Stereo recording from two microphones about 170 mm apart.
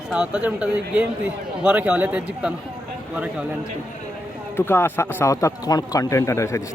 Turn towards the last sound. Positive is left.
turn(degrees=15)  # may be behind; listen again after turning